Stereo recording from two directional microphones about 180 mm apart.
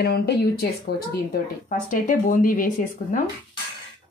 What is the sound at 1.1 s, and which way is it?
Speech, 50° left (ahead or behind).